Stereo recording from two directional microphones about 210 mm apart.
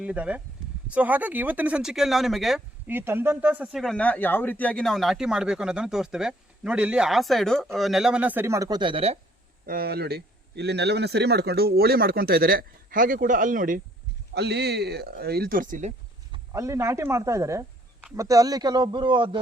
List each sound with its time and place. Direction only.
0.0 s speech: 5° right (ahead or behind); by 9.1 s 25° right (ahead or behind)
9.6 s speech: 45° right (ahead or behind)
14.3 s speech: 50° right (ahead or behind)
16.3 s speech: 15° right (ahead or behind)